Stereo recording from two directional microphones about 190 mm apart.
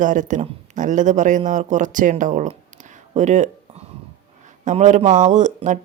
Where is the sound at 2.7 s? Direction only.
40° right (ahead or behind).